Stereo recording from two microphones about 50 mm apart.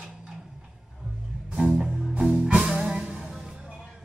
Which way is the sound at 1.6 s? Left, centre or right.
Centre.